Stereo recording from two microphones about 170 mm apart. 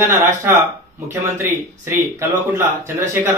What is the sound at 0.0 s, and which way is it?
Speech, 15° right (ahead or behind).